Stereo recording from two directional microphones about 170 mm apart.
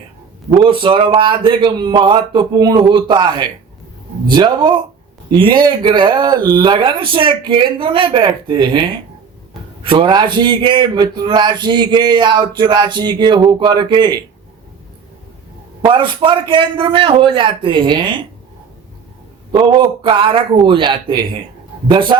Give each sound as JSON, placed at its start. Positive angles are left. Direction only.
{"t": 0.5, "sound": "a man's voice", "side_deg": -30}
{"t": 15.8, "sound": "a man's voice", "side_deg": -30}
{"t": 19.5, "sound": "a man's voice", "side_deg": -30}